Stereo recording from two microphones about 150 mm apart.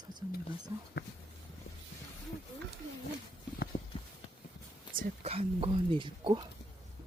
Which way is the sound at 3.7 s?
35° left (ahead or behind).